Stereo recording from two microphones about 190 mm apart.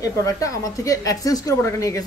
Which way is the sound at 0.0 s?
15° left (ahead or behind).